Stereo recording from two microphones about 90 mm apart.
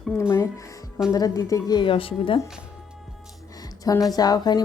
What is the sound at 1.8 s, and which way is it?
Speech, 90° left.